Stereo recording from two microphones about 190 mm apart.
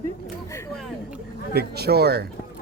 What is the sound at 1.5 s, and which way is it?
Speech, 55° right (ahead or behind).